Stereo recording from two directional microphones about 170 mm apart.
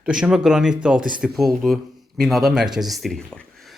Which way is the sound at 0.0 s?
5° right (ahead or behind).